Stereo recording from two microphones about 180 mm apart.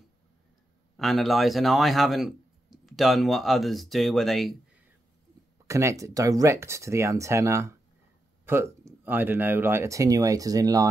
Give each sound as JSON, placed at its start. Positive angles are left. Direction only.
{"t": 0.9, "sound": "speech", "side_deg": 0}
{"t": 5.7, "sound": "speech", "side_deg": -15}